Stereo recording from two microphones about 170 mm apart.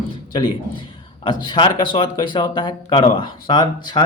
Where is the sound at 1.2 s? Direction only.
25° left (ahead or behind).